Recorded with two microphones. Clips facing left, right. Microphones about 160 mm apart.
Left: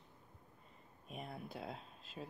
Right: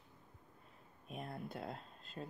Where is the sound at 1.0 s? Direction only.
Centre (ahead or behind).